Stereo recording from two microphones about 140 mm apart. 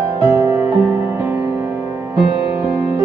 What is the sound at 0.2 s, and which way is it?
Music, 30° right (ahead or behind).